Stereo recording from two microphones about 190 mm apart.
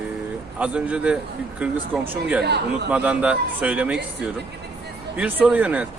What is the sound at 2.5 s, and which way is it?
Speech, 60° right (ahead or behind).